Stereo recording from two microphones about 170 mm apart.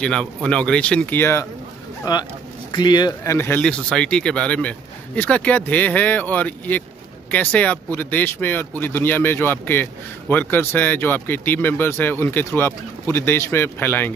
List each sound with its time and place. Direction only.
0.0 s speech: 5° left (ahead or behind)